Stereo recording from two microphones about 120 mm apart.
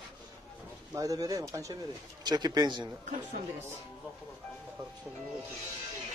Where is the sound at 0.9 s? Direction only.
30° right (ahead or behind).